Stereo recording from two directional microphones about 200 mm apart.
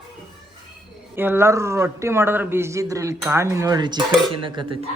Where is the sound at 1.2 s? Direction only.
10° right (ahead or behind).